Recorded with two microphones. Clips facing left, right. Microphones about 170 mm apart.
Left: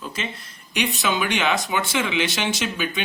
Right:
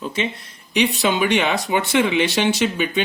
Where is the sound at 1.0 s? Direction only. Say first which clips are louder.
Right 2 dB; 65° right (ahead or behind).